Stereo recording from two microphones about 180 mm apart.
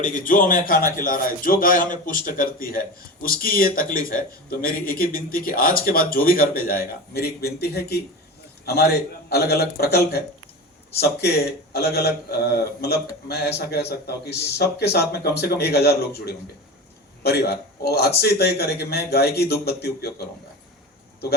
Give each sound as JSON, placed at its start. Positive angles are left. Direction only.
{"t": 0.0, "sound": "a man's voice", "side_deg": 45}